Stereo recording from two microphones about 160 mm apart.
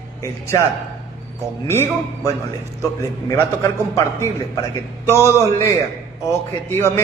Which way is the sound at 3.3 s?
20° left (ahead or behind).